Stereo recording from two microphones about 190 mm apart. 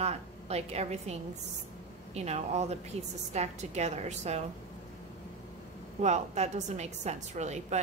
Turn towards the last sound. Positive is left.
turn(degrees=-35)  # may be behind; listen again after turning